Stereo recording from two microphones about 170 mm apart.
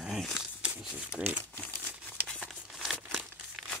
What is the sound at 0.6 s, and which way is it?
Crumpling, 10° right (ahead or behind).